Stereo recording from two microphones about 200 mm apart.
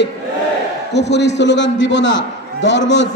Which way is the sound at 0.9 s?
60° left (ahead or behind).